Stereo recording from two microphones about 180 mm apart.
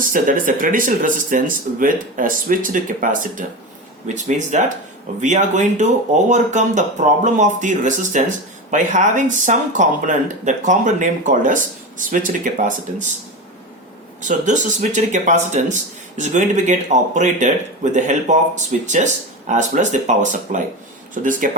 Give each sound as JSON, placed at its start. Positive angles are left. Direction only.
{"t": 0.0, "sound": "speech", "side_deg": -50}
{"t": 14.2, "sound": "speech", "side_deg": -45}